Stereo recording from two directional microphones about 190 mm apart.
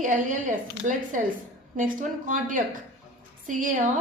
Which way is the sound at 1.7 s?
45° right (ahead or behind).